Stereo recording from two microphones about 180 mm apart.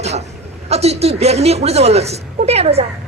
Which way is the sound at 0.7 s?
35° right (ahead or behind).